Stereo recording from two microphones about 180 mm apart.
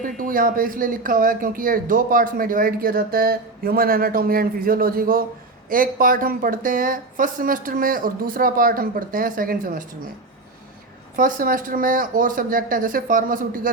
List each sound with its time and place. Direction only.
0.2 s a man's voice: 50° right (ahead or behind)
11.2 s a man's voice: 50° right (ahead or behind)